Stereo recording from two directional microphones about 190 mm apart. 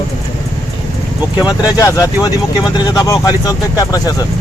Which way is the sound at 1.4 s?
20° left (ahead or behind).